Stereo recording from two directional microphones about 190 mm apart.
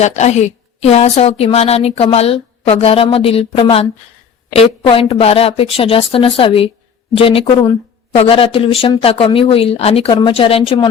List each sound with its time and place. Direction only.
0.0 s speech: 35° left (ahead or behind)